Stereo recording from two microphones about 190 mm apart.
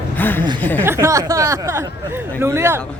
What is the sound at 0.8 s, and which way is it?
Speech, 15° right (ahead or behind).